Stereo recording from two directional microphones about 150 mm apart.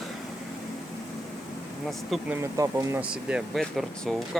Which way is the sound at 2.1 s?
10° right (ahead or behind).